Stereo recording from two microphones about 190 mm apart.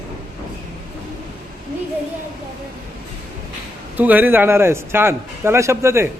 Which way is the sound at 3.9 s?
10° right (ahead or behind).